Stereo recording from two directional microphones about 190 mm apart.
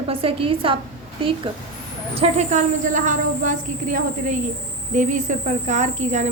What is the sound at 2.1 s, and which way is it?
A woman's voice, 35° right (ahead or behind).